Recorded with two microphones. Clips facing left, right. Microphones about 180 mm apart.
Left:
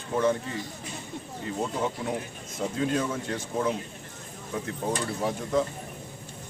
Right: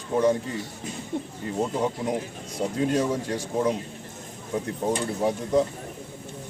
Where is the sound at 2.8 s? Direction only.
35° right (ahead or behind).